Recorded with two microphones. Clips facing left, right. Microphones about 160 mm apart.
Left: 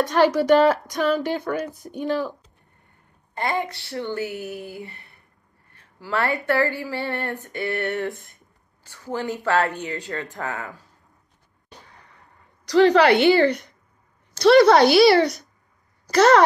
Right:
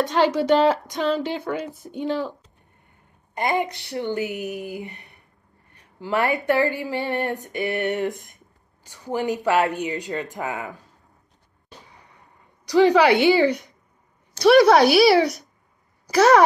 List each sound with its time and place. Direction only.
0.0 s speech: 20° right (ahead or behind)
3.3 s speech: 20° right (ahead or behind)
12.6 s a woman's voice: 15° right (ahead or behind)